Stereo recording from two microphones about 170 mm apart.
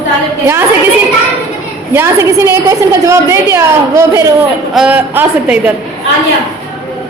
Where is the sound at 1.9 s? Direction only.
15° right (ahead or behind).